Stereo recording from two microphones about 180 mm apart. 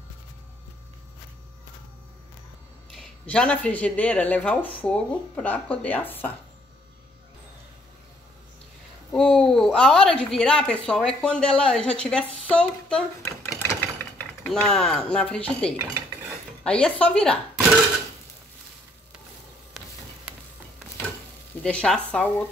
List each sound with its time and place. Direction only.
3.3 s speech: 5° left (ahead or behind)
9.1 s a sound: 5° left (ahead or behind)
10.9 s speech: 5° left (ahead or behind)
13.5 s sewing machine: 15° left (ahead or behind)
14.4 s speech: 5° left (ahead or behind)
21.6 s speech: 5° left (ahead or behind)